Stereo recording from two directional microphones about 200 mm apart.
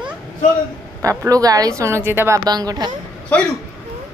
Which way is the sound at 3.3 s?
5° left (ahead or behind).